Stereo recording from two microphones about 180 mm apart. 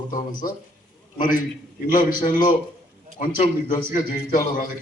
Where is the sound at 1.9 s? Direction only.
50° left (ahead or behind).